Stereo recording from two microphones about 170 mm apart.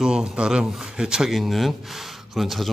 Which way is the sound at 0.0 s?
5° right (ahead or behind).